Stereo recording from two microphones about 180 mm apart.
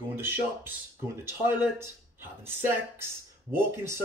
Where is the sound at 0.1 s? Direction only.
10° right (ahead or behind).